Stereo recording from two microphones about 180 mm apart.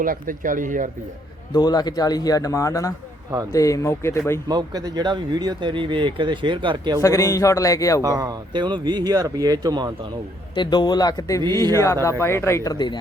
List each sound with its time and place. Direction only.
0.0 s speech: 50° right (ahead or behind)
1.5 s speech: 20° left (ahead or behind)
4.4 s speech: 20° right (ahead or behind)
7.0 s speech: 15° left (ahead or behind)
8.0 s speech: 20° right (ahead or behind)
10.5 s speech: 25° left (ahead or behind)